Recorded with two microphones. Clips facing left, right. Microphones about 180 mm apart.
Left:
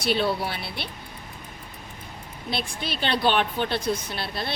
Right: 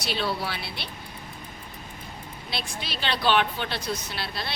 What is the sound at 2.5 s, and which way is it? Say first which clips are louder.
A woman's voice: left 4 dB; 50° left (ahead or behind).